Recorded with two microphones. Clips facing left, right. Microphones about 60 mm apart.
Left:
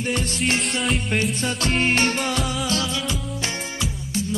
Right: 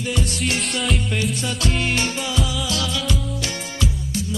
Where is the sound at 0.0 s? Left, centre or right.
Left.